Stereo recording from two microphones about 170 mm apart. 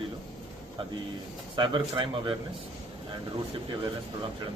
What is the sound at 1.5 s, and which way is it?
Speech, 30° right (ahead or behind).